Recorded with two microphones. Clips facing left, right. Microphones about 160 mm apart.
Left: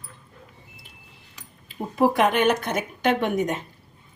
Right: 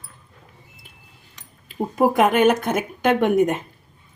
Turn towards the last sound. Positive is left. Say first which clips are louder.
# right 5 dB
turn(degrees=-50)  # may be behind; listen again after turning